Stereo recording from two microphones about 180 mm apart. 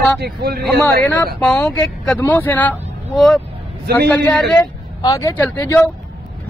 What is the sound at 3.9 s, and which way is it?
Speech, 60° right (ahead or behind).